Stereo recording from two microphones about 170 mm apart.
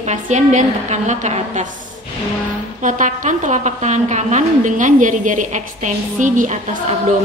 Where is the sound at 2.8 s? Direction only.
50° right (ahead or behind).